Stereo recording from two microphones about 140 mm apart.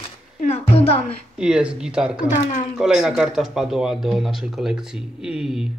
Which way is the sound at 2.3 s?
60° left (ahead or behind).